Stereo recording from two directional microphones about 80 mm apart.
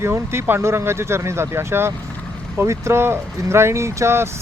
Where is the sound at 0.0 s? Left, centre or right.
Right.